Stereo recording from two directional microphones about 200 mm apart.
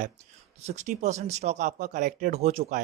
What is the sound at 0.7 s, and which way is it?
Speech, 35° right (ahead or behind).